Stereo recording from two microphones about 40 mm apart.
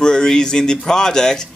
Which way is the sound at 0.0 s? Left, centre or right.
Centre.